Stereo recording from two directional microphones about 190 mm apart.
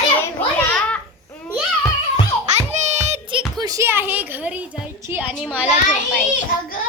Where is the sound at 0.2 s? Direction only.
10° left (ahead or behind).